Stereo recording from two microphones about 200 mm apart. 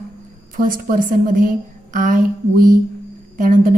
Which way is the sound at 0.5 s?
45° right (ahead or behind).